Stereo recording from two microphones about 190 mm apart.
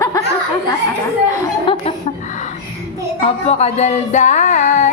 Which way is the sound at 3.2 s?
35° left (ahead or behind).